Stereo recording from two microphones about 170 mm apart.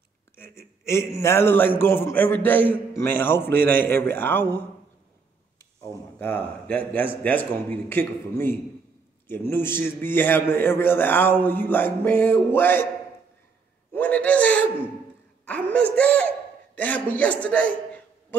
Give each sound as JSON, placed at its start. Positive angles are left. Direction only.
{"t": 0.4, "sound": "a man's voice", "side_deg": 15}
{"t": 6.1, "sound": "a man's voice", "side_deg": 10}
{"t": 13.9, "sound": "a sound", "side_deg": 10}
{"t": 15.4, "sound": "a woman's voice", "side_deg": 10}